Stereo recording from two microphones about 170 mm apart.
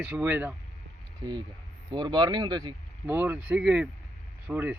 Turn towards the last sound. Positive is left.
turn(degrees=-10)  # may be behind; listen again after turning